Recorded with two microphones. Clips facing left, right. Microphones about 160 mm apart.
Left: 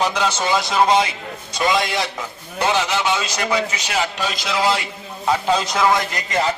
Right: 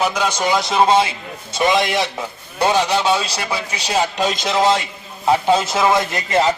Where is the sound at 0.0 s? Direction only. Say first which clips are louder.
Right 1 dB; 10° right (ahead or behind).